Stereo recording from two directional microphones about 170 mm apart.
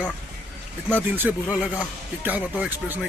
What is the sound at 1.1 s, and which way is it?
Speech, 10° right (ahead or behind).